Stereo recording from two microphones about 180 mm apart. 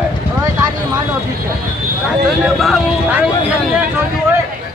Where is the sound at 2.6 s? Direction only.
5° right (ahead or behind).